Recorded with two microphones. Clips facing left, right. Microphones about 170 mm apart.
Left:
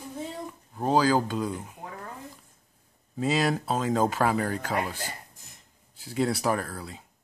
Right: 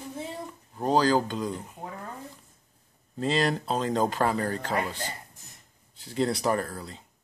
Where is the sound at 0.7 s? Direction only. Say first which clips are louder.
Even; 5° left (ahead or behind).